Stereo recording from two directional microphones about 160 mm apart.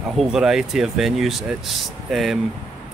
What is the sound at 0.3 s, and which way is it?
Speech, 5° right (ahead or behind).